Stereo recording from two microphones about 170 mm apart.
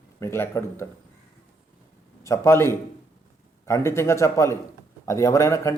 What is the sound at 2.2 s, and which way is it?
A man's voice, 15° left (ahead or behind).